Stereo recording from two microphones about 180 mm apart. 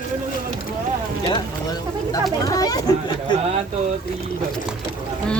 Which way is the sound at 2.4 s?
20° left (ahead or behind).